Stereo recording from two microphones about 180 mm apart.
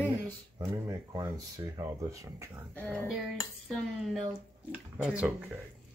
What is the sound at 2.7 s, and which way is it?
A woman's voice, 10° left (ahead or behind).